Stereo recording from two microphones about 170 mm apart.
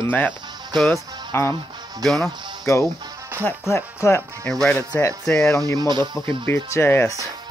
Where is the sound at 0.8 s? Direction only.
15° left (ahead or behind).